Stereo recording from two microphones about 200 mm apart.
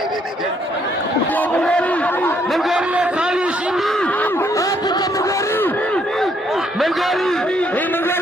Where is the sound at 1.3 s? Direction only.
10° left (ahead or behind).